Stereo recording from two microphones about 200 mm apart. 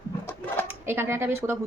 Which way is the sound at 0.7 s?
10° right (ahead or behind).